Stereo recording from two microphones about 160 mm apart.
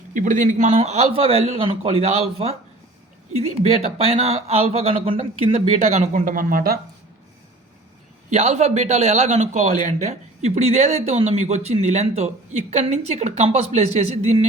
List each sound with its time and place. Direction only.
0.1 s a man's voice: 50° right (ahead or behind); by 5.5 s 35° right (ahead or behind)
5.9 s speech: 50° right (ahead or behind)
8.3 s a man's voice: 45° right (ahead or behind)